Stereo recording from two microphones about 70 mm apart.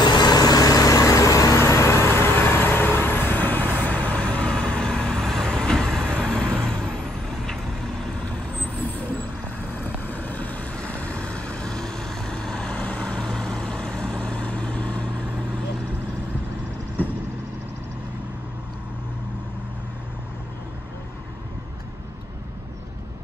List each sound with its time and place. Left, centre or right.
0.0 s vehicle: left; by 7.5 s centre
10.0 s vehicle: left